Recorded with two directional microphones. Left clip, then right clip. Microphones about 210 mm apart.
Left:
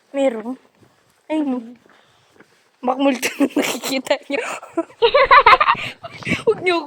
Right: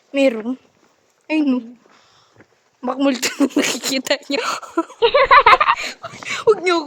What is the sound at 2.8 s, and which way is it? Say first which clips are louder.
Speech: left 1 dB; 5° right (ahead or behind).